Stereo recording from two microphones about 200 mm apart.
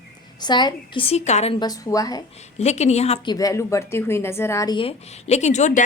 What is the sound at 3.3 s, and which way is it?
Speech, 15° left (ahead or behind).